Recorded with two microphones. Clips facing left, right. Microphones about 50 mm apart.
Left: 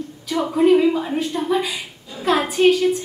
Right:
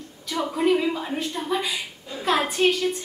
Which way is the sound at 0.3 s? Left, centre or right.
Centre.